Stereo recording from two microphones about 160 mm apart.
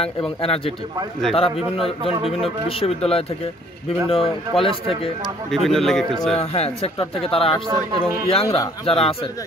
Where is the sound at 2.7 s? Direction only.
35° left (ahead or behind).